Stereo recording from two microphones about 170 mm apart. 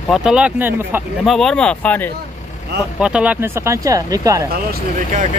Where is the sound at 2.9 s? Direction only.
5° right (ahead or behind).